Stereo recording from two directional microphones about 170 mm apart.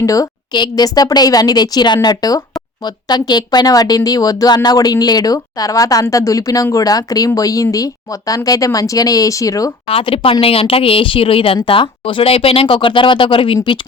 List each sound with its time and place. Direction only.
0.0 s speech: 20° left (ahead or behind)
9.8 s speech: 30° left (ahead or behind)